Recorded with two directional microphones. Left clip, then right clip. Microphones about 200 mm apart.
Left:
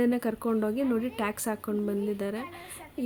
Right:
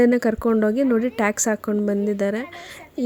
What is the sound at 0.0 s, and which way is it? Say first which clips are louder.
Speech: right 10 dB; 35° right (ahead or behind).